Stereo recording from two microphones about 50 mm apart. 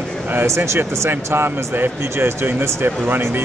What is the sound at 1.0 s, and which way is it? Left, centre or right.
Speech, right.